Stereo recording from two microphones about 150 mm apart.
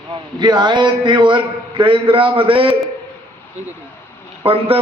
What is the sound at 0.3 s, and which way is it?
A man's voice, 30° right (ahead or behind).